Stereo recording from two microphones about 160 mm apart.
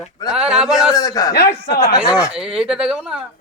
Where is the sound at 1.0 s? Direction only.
20° left (ahead or behind).